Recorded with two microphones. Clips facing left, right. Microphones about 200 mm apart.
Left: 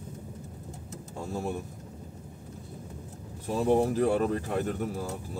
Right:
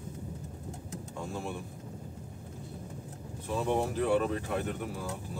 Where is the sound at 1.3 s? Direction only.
40° left (ahead or behind).